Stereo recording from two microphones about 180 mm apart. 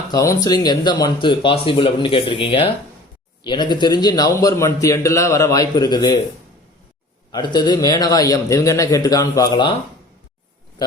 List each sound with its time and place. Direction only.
0.1 s a man's voice: 20° left (ahead or behind)
7.3 s a man's voice: 25° left (ahead or behind)
10.8 s a man's voice: 25° left (ahead or behind)